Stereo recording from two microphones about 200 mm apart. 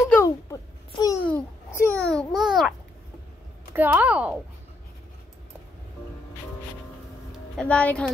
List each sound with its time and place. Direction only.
0.1 s a child's voice: 15° left (ahead or behind); by 2.7 s centre (ahead or behind)
3.7 s speech: 10° right (ahead or behind)
7.5 s a woman's voice: 5° left (ahead or behind)